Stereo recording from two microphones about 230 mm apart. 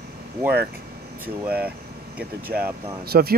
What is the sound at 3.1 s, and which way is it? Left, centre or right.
Speech, right.